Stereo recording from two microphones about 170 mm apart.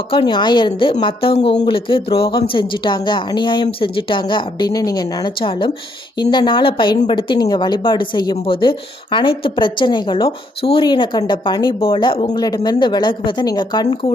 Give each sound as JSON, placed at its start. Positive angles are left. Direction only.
{"t": 0.1, "sound": "a woman's voice", "side_deg": 30}